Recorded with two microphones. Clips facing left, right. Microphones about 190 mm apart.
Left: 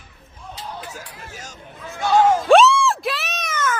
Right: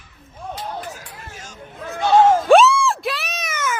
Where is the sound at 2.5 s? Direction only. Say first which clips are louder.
Right 1 dB; centre (ahead or behind).